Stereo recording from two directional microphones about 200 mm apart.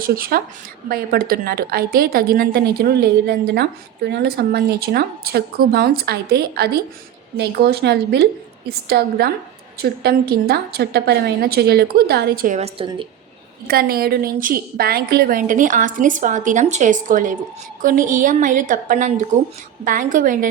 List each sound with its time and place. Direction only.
0.0 s a woman's voice: 50° right (ahead or behind)
12.5 s a woman's voice: 30° right (ahead or behind)
13.7 s a woman's voice: 45° right (ahead or behind)